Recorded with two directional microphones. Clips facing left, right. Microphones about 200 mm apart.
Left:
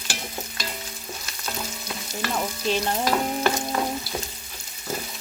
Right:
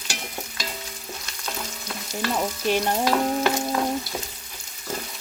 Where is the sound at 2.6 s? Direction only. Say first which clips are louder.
Right 2 dB; 15° right (ahead or behind).